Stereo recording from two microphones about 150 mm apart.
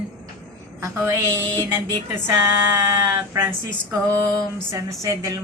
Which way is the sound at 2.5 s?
15° right (ahead or behind).